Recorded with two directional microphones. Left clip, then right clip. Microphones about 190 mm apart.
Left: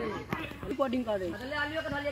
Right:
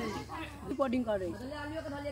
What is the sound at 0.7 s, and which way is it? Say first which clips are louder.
Speech: left 1 dB; 20° left (ahead or behind).